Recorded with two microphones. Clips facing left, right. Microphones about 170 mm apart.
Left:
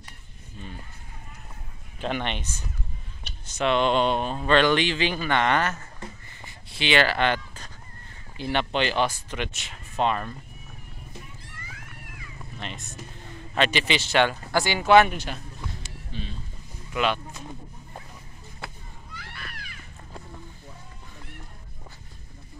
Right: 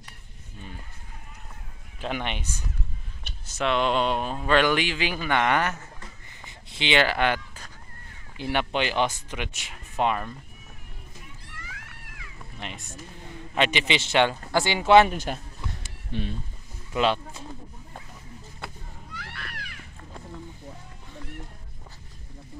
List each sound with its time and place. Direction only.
2.0 s speech: 5° right (ahead or behind)
6.4 s a sound: 20° right (ahead or behind)
8.4 s speech: 10° right (ahead or behind)
11.4 s cat: 75° right (ahead or behind)
12.5 s speech: 10° right (ahead or behind)
15.1 s a sound: 45° right (ahead or behind)
16.1 s speech: 60° right (ahead or behind)
16.9 s speech: 30° right (ahead or behind)
19.1 s a sound: 65° right (ahead or behind)